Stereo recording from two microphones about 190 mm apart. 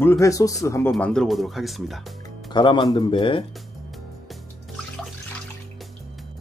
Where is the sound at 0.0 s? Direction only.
15° left (ahead or behind).